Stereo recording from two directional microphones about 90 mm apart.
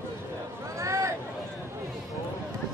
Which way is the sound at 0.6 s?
35° right (ahead or behind).